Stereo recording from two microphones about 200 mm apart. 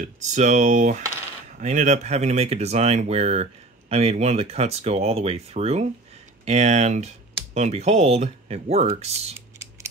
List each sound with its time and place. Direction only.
0.0 s speech: 35° right (ahead or behind)